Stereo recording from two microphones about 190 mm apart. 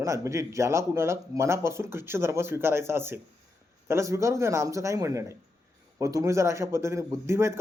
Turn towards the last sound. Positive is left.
turn(degrees=-15)  # may be behind; listen again after turning